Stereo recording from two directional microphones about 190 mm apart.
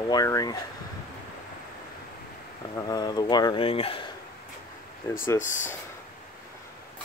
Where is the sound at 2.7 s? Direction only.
20° left (ahead or behind).